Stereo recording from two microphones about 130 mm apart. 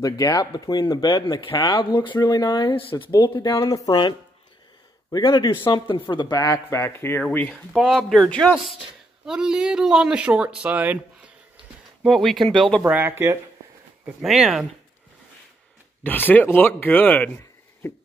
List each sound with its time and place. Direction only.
0.0 s speech: 30° left (ahead or behind)
1.2 s speech: 40° left (ahead or behind)
3.5 s speech: 25° left (ahead or behind)
5.1 s speech: 35° left (ahead or behind); by 8.5 s 10° left (ahead or behind)
9.2 s speech: 5° right (ahead or behind)
12.0 s speech: centre (ahead or behind)
12.8 s speech: 15° right (ahead or behind)
14.0 s speech: 5° right (ahead or behind)
16.0 s speech: 15° left (ahead or behind)